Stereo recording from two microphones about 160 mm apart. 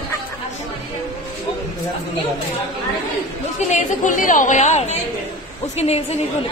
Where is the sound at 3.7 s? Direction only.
50° left (ahead or behind).